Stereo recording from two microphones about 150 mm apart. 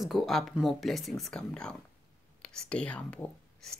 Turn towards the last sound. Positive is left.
turn(degrees=10)  # may be behind; listen again after turning